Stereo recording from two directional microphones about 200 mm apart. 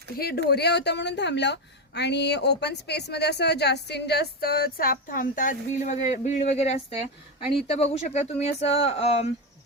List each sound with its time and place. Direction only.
0.2 s a woman's voice: 50° left (ahead or behind); by 9.3 s 30° left (ahead or behind)